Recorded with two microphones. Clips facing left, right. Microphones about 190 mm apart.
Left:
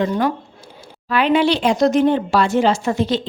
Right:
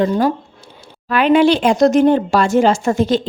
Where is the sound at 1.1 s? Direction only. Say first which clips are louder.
Right 4 dB; 50° right (ahead or behind).